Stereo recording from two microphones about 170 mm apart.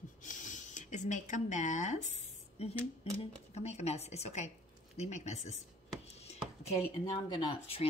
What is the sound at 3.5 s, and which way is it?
A woman's voice, 40° left (ahead or behind).